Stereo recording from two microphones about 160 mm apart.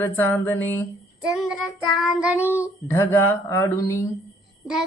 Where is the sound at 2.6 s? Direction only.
15° left (ahead or behind).